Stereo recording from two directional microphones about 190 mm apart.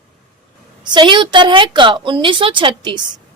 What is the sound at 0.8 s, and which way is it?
Speech, 25° right (ahead or behind).